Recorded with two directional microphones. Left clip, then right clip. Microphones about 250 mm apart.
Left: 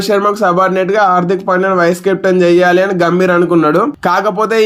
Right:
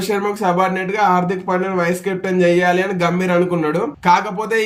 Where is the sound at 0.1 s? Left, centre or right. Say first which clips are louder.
Left 7 dB; centre.